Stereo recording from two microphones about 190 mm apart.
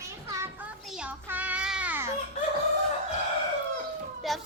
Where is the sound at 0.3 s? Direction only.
15° right (ahead or behind).